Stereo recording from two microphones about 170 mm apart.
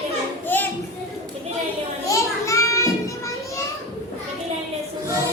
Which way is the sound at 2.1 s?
20° left (ahead or behind).